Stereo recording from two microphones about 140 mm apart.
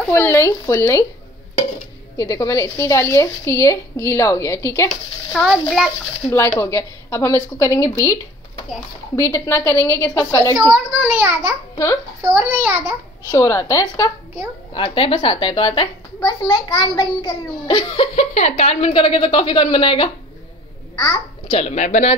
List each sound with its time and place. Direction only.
0.1 s a woman's voice: 20° left (ahead or behind)
2.1 s a woman's voice: 25° left (ahead or behind)
5.3 s a child's voice: centre (ahead or behind)
6.2 s a woman's voice: 20° left (ahead or behind)
10.7 s a child's voice: 10° right (ahead or behind)
11.7 s a child's voice: 20° left (ahead or behind)
12.3 s a child's voice: 15° right (ahead or behind)
13.3 s a woman's voice: 20° left (ahead or behind)
14.7 s a child's voice: 40° left (ahead or behind)
18.1 s a child's voice: 50° left (ahead or behind)
20.9 s a child's voice: 25° left (ahead or behind)
21.5 s speech: 50° left (ahead or behind)